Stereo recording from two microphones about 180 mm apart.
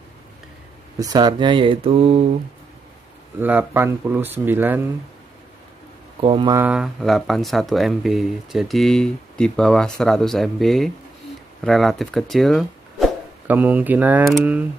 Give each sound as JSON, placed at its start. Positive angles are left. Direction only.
{"t": 0.9, "sound": "speech", "side_deg": -20}
{"t": 3.3, "sound": "speech", "side_deg": -10}
{"t": 6.2, "sound": "speech", "side_deg": -30}
{"t": 6.5, "sound": "speech", "side_deg": -10}
{"t": 13.5, "sound": "speech", "side_deg": -10}